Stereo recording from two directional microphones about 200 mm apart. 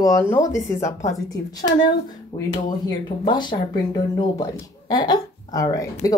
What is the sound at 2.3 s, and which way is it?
Speech, 25° left (ahead or behind).